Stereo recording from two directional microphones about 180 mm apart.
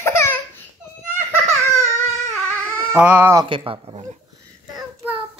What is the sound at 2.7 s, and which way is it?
Speech, 10° right (ahead or behind).